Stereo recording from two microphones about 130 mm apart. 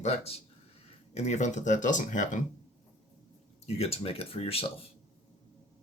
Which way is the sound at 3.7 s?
50° left (ahead or behind).